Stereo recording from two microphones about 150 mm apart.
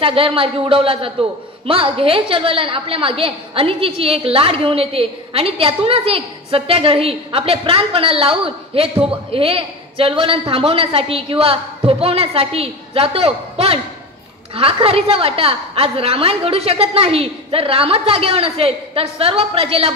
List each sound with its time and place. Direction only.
0.0 s a woman's voice: 35° right (ahead or behind)